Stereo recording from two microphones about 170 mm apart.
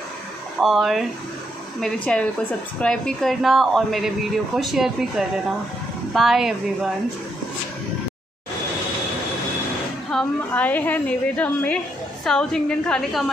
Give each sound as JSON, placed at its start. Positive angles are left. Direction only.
{"t": 0.6, "sound": "speech", "side_deg": 0}
{"t": 10.1, "sound": "a woman's voice", "side_deg": 10}